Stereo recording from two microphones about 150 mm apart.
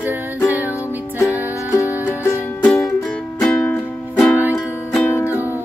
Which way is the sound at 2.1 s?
20° left (ahead or behind).